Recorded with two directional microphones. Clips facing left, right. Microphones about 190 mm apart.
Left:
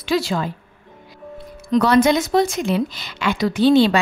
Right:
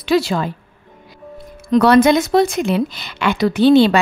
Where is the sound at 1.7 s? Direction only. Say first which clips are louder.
Right 4 dB; 60° right (ahead or behind).